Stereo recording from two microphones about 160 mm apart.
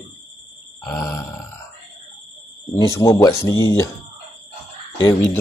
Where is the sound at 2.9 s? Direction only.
20° left (ahead or behind).